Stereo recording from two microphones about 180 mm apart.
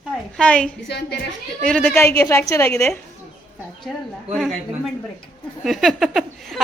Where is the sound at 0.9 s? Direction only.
70° left (ahead or behind).